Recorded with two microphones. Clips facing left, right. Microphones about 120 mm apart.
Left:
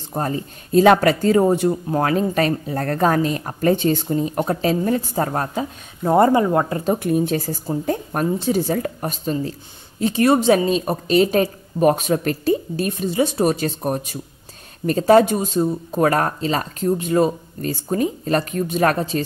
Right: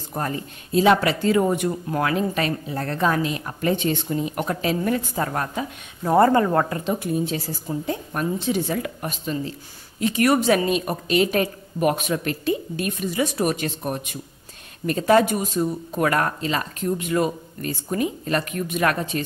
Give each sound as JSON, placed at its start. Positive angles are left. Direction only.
{"t": 0.1, "sound": "speech", "side_deg": 30}
{"t": 0.7, "sound": "a woman's voice", "side_deg": 45}
{"t": 2.0, "sound": "a woman's voice", "side_deg": 40}
{"t": 7.0, "sound": "a woman's voice", "side_deg": 55}